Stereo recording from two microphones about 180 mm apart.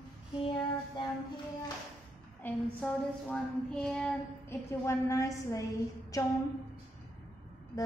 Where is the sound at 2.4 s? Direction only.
5° left (ahead or behind).